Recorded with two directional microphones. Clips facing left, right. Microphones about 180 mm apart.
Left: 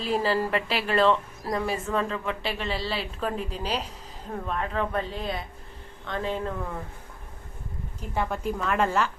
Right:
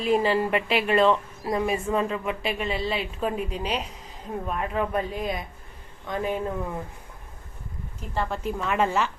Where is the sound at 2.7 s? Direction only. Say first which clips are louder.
Right 3 dB; 35° left (ahead or behind).